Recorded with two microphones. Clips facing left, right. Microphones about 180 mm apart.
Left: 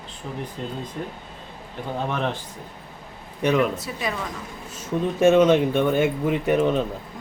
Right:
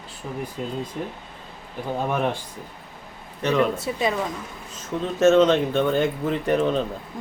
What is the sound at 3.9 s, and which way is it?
Speech, 25° right (ahead or behind).